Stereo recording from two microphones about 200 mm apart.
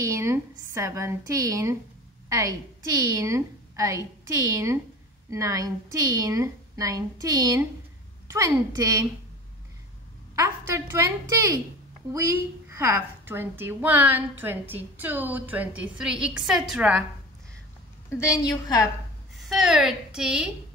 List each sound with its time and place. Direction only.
0.0 s a woman's voice: 15° right (ahead or behind)
10.3 s a woman's voice: 15° right (ahead or behind)
18.1 s a woman's voice: 15° left (ahead or behind)
19.4 s a woman's voice: centre (ahead or behind)